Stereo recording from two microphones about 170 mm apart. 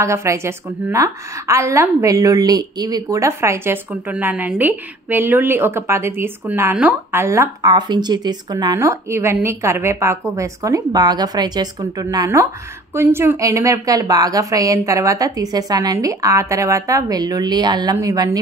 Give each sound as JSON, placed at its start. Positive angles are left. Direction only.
{"t": 0.0, "sound": "a woman's voice", "side_deg": -15}